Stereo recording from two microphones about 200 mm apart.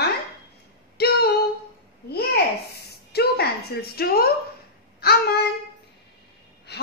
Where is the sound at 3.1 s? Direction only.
55° left (ahead or behind).